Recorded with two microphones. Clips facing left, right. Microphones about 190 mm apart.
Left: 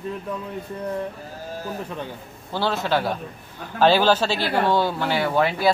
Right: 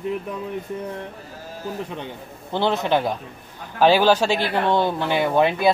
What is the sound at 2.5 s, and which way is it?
A man's voice, 20° right (ahead or behind).